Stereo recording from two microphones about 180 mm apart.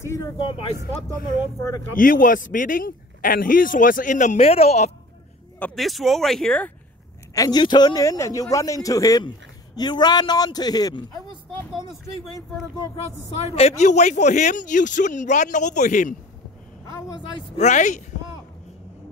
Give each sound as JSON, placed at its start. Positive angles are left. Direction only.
{"t": 0.0, "sound": "speech", "side_deg": 15}
{"t": 0.4, "sound": "a man's voice", "side_deg": 30}
{"t": 2.0, "sound": "speech", "side_deg": 50}
{"t": 5.6, "sound": "speech", "side_deg": 0}
{"t": 7.3, "sound": "a man's voice", "side_deg": 20}
{"t": 12.4, "sound": "a man's voice", "side_deg": 25}
{"t": 12.9, "sound": "speech", "side_deg": 35}
{"t": 17.6, "sound": "speech", "side_deg": 40}